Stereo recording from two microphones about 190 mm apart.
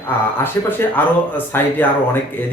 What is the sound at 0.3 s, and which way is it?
Speech, 10° left (ahead or behind).